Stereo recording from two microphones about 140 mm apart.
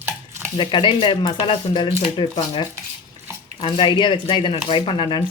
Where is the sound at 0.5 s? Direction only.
35° left (ahead or behind).